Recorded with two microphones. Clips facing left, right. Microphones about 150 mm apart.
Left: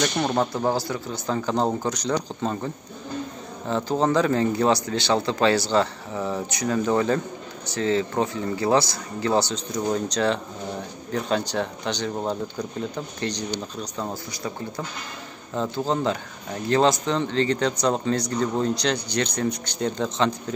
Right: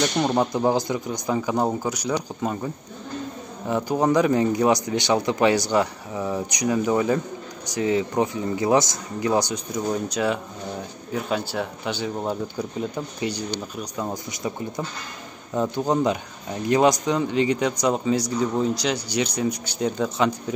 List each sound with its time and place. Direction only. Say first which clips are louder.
0.0 s speech: right 2 dB; 5° right (ahead or behind)
0.5 s speech: right 3 dB; 15° right (ahead or behind)
15.5 s speech: right 3 dB; 15° right (ahead or behind)